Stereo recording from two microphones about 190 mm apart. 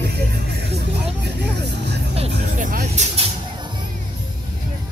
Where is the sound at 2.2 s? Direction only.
45° right (ahead or behind).